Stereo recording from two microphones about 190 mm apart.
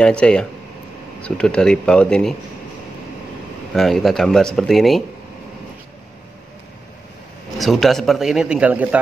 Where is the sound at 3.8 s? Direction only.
Centre (ahead or behind).